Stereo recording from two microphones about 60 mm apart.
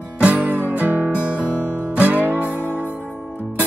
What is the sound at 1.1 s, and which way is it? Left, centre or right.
Guitar, right.